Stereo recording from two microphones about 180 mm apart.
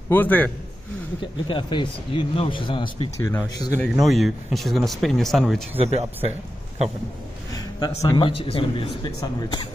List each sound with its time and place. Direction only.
0.1 s speech: 10° left (ahead or behind)
1.5 s speech: 25° left (ahead or behind)
3.2 s speech: 15° left (ahead or behind)
4.0 s speech: centre (ahead or behind)
5.8 s speech: 35° right (ahead or behind)
8.0 s speech: 25° left (ahead or behind)